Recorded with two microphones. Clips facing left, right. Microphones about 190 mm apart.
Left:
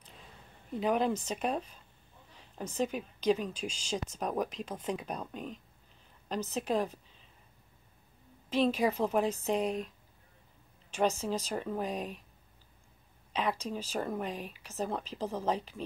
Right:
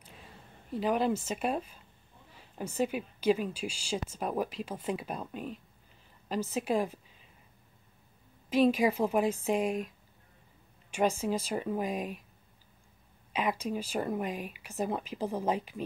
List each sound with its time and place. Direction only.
0.7 s a woman's voice: centre (ahead or behind)
8.5 s speech: 10° right (ahead or behind)
13.3 s speech: 10° right (ahead or behind)